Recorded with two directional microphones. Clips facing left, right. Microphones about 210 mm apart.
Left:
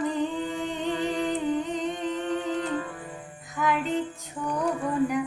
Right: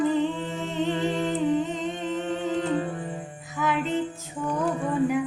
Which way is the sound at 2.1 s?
25° right (ahead or behind).